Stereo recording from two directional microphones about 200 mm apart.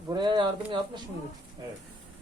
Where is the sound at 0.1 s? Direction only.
20° right (ahead or behind).